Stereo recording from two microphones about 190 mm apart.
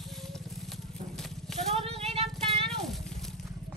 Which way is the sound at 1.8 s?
35° right (ahead or behind).